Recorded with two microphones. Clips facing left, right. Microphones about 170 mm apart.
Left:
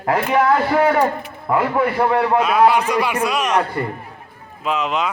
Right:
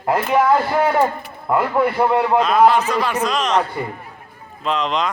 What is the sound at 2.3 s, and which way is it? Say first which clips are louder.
A man's voice: right 1 dB; 10° left (ahead or behind).